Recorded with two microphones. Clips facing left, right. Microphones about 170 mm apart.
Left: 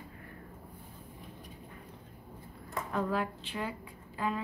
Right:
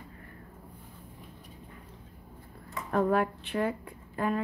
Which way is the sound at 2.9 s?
55° right (ahead or behind).